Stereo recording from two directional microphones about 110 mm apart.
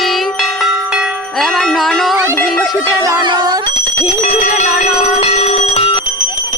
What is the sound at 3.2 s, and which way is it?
Speech, 40° right (ahead or behind).